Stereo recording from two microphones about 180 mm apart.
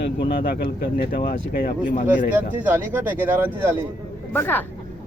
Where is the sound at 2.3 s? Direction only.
10° right (ahead or behind).